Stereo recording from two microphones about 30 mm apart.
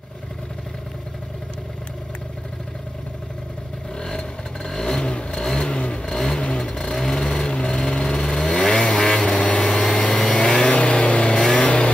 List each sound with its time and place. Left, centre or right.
4.0 s vehicle: centre
5.7 s vehicle: left
6.0 s vehicle: centre
10.7 s vehicle: left
11.3 s vehicle: centre
11.6 s vehicle: left